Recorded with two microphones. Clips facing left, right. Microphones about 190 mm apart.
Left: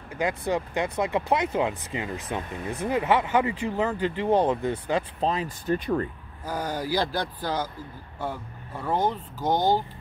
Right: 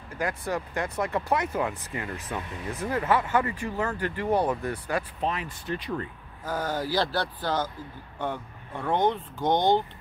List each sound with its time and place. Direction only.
0.2 s speech: 20° left (ahead or behind)
5.7 s speech: 45° left (ahead or behind)
6.4 s speech: 10° left (ahead or behind)